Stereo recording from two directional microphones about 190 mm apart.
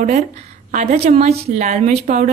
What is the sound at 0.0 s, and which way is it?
A woman's voice, 40° right (ahead or behind).